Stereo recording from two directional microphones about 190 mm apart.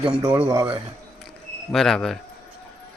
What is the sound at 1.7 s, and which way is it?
Speech, centre (ahead or behind).